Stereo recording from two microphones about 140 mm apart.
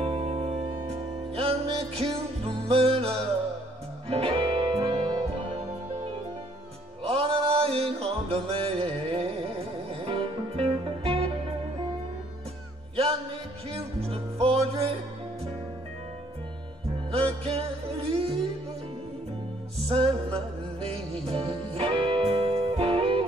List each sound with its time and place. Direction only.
0.0 s music: 40° right (ahead or behind)
7.1 s music: 45° right (ahead or behind)
12.9 s music: 40° right (ahead or behind)
17.1 s music: 45° right (ahead or behind)
19.9 s music: 45° right (ahead or behind)